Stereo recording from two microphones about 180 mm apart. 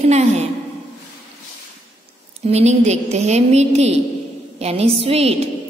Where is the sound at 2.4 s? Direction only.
40° right (ahead or behind).